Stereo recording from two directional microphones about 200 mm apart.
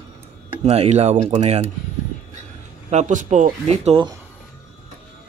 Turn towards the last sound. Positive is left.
turn(degrees=-30)  # may be behind; listen again after turning